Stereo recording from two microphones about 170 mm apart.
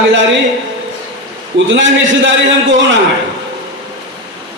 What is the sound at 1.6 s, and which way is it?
A man's voice, 90° right.